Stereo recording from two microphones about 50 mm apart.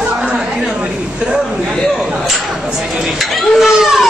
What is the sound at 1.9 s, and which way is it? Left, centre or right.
A woman's voice, centre.